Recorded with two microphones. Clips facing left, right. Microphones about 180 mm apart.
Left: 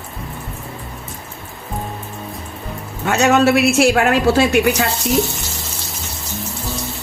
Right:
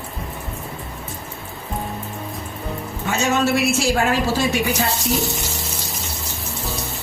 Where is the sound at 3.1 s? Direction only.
70° left (ahead or behind).